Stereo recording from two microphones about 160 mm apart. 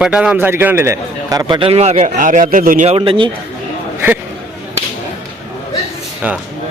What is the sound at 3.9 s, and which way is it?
Speech, 15° right (ahead or behind).